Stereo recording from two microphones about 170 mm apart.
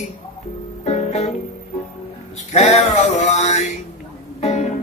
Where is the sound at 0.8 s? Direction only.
40° left (ahead or behind).